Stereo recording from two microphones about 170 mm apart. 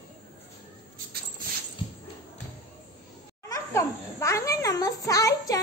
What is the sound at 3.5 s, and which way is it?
A child's voice, 15° left (ahead or behind).